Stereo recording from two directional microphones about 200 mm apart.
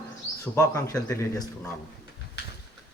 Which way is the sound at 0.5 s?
15° left (ahead or behind).